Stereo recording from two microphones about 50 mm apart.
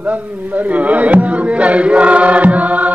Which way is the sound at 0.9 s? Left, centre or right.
Right.